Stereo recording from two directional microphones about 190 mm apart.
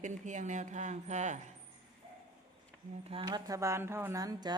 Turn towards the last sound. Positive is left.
turn(degrees=-20)  # may be behind; listen again after turning